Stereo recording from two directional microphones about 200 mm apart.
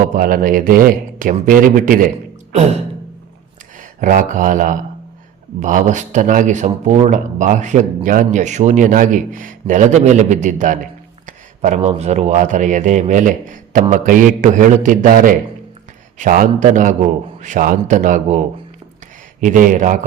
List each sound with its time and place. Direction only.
0.0 s a man's voice: 45° right (ahead or behind)
3.8 s a man's voice: 40° right (ahead or behind)